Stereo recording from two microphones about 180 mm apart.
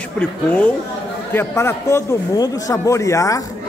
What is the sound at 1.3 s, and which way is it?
A man's voice, 15° left (ahead or behind).